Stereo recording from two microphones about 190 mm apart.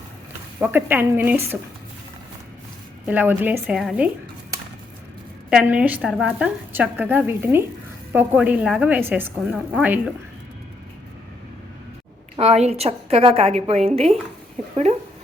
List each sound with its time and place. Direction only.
0.6 s a woman's voice: 10° right (ahead or behind)
3.1 s a woman's voice: 10° right (ahead or behind)
5.5 s a woman's voice: 5° right (ahead or behind)
12.4 s a woman's voice: 35° right (ahead or behind)